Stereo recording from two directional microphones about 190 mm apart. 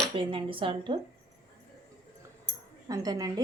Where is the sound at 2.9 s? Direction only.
20° right (ahead or behind).